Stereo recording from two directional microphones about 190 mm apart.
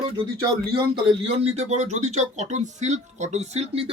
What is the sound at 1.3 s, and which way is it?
Speech, 35° right (ahead or behind).